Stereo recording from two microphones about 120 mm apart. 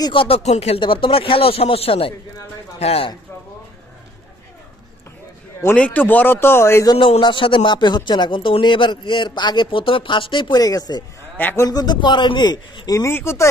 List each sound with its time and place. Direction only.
0.0 s speech: 45° left (ahead or behind)
0.4 s speech: 60° left (ahead or behind)
5.8 s speech: 10° left (ahead or behind)
7.0 s speech: 40° left (ahead or behind)
10.6 s speech: 30° left (ahead or behind)
11.3 s speech: 15° left (ahead or behind)
11.6 s speech: 35° left (ahead or behind)